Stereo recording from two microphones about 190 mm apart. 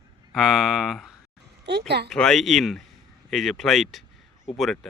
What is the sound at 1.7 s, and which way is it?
Speech, 60° right (ahead or behind).